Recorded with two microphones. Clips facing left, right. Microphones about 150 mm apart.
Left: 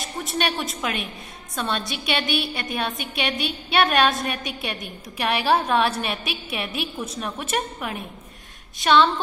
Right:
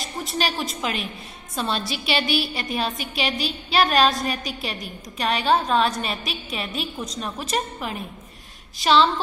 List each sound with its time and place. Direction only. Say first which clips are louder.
0.0 s a woman's voice: even; centre (ahead or behind)